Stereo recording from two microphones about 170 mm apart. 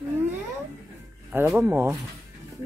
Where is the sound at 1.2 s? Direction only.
10° right (ahead or behind).